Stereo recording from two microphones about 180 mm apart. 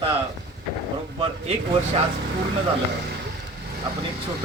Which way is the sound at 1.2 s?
35° right (ahead or behind).